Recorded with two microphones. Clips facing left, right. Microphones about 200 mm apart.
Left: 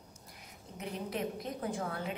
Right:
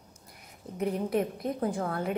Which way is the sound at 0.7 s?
55° right (ahead or behind).